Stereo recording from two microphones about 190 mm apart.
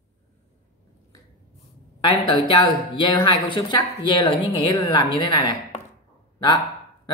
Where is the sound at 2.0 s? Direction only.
25° left (ahead or behind).